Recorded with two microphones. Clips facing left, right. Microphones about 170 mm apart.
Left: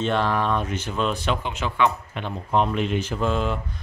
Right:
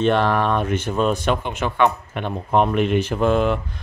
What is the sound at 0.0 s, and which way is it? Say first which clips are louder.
Speech: right 5 dB; 65° right (ahead or behind).